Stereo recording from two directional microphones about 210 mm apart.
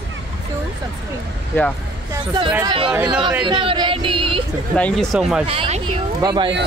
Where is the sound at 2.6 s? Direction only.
25° right (ahead or behind).